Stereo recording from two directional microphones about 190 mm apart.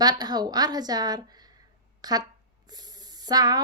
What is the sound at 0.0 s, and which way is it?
A woman's voice, 20° right (ahead or behind).